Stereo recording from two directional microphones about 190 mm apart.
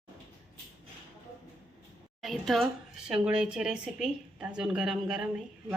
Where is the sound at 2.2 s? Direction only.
Centre (ahead or behind).